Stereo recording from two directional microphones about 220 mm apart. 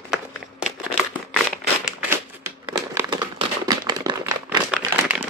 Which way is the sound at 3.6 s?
15° right (ahead or behind).